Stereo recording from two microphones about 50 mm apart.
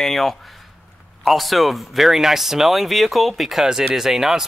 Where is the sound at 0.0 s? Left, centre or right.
Centre.